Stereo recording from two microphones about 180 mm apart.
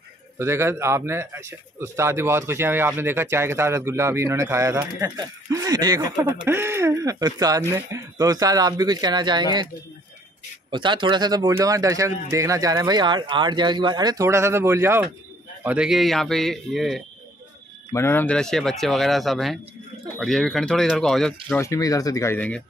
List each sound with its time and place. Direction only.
0.4 s speech: 15° right (ahead or behind)
10.7 s speech: 25° right (ahead or behind); by 17.0 s centre (ahead or behind)
17.9 s speech: 10° left (ahead or behind)
21.5 s speech: 15° left (ahead or behind)